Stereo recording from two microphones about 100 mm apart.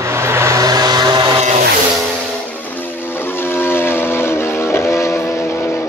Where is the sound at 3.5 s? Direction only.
25° left (ahead or behind).